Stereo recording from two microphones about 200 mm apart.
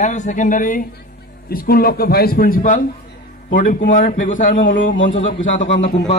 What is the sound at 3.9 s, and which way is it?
A man's voice, 40° left (ahead or behind).